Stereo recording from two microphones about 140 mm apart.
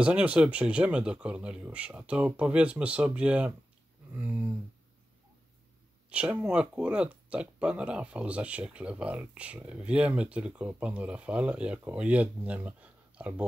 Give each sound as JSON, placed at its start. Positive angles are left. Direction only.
{"t": 0.0, "sound": "speech", "side_deg": -10}
{"t": 6.0, "sound": "speech", "side_deg": -10}